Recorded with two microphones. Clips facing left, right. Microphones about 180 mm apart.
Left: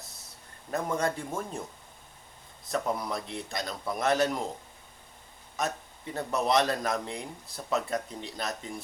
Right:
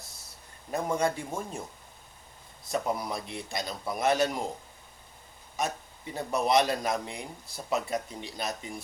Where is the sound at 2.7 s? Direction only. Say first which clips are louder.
Even; 15° right (ahead or behind).